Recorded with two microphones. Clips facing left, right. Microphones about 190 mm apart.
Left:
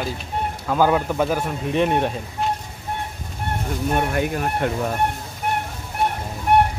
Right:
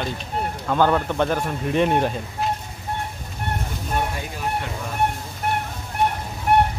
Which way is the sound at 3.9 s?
60° left (ahead or behind).